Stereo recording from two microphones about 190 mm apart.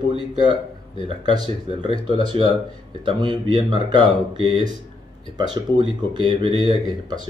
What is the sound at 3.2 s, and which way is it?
Speech, 25° right (ahead or behind).